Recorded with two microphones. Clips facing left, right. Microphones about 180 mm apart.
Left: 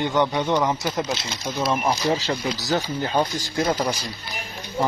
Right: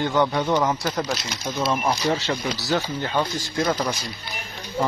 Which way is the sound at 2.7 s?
20° left (ahead or behind).